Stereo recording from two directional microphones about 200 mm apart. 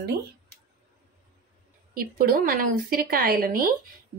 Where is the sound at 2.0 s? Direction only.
45° right (ahead or behind).